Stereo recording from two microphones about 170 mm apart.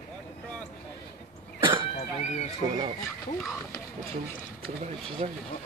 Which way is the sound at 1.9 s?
40° left (ahead or behind).